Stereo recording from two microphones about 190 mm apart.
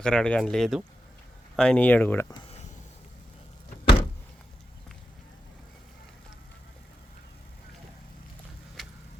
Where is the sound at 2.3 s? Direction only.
30° left (ahead or behind).